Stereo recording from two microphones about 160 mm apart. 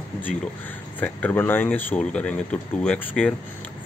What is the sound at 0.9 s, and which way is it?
Speech, 10° left (ahead or behind).